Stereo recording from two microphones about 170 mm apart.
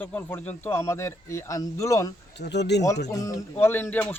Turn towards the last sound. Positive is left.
turn(degrees=10)  # may be behind; listen again after turning